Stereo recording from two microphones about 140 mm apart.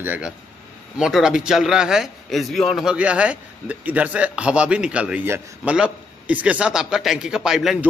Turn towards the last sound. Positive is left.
turn(degrees=-5)  # may be behind; listen again after turning